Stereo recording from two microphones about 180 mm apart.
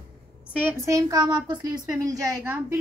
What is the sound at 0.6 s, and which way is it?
A woman's voice, 15° right (ahead or behind).